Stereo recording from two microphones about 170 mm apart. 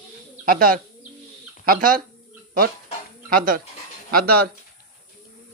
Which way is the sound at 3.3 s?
55° right (ahead or behind).